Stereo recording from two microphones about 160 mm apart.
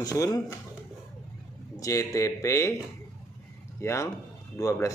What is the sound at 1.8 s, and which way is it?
Speech, 20° left (ahead or behind).